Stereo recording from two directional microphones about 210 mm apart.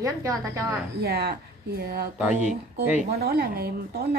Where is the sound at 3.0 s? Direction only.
50° right (ahead or behind).